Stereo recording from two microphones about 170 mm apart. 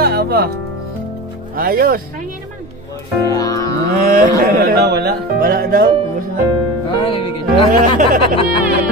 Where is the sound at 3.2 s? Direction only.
20° left (ahead or behind).